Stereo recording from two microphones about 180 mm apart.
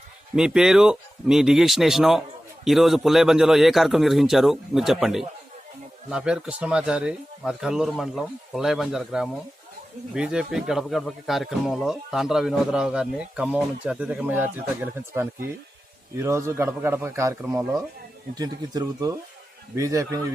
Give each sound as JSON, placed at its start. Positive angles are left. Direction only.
{"t": 0.3, "sound": "a man's voice", "side_deg": -5}
{"t": 18.3, "sound": "a man's voice", "side_deg": -20}